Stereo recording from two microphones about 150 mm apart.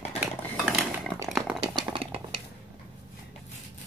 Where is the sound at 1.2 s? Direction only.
Centre (ahead or behind).